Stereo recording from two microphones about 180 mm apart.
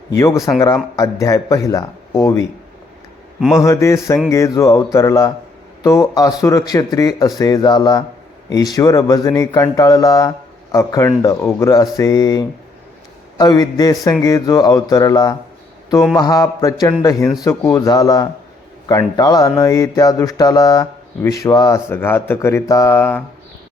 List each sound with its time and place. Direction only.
0.1 s speech: 15° left (ahead or behind)
3.6 s speech: 15° left (ahead or behind)